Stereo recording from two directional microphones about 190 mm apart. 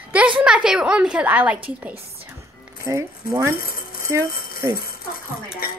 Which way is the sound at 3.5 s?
50° left (ahead or behind).